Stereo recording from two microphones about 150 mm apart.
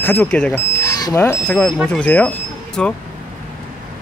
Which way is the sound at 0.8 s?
25° left (ahead or behind).